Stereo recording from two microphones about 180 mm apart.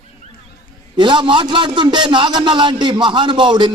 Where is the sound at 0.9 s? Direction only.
25° right (ahead or behind).